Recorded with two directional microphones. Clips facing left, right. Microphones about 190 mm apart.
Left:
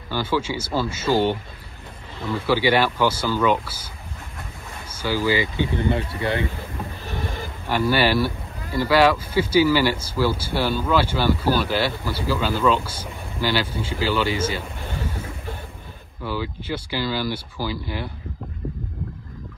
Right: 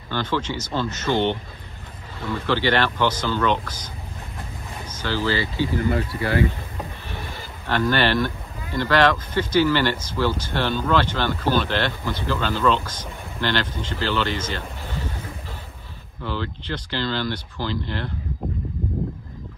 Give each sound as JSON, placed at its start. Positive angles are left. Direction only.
{"t": 0.1, "sound": "speech", "side_deg": 10}
{"t": 2.4, "sound": "speech", "side_deg": 10}
{"t": 4.9, "sound": "speech", "side_deg": 10}
{"t": 5.8, "sound": "speech", "side_deg": 25}
{"t": 7.6, "sound": "speech", "side_deg": 10}
{"t": 16.3, "sound": "speech", "side_deg": 10}